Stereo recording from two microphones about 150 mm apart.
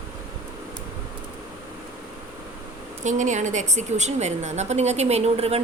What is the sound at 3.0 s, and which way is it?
A woman's voice, 55° right (ahead or behind).